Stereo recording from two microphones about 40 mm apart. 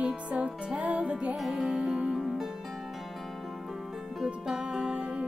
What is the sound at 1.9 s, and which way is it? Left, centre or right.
Music, right.